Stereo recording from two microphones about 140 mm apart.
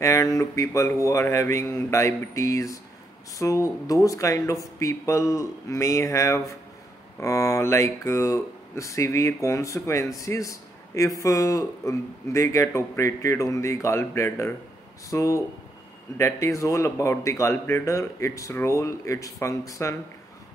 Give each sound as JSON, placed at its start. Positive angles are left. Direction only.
{"t": 0.0, "sound": "speech", "side_deg": 20}